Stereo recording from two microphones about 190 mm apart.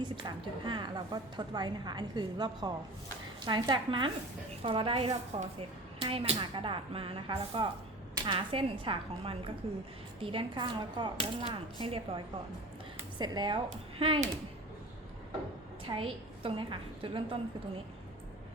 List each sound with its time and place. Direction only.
0.0 s a woman's voice: 25° right (ahead or behind)
13.7 s a woman's voice: 35° right (ahead or behind)
15.9 s a woman's voice: 30° right (ahead or behind)